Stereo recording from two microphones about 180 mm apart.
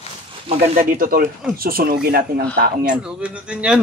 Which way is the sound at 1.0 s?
50° right (ahead or behind).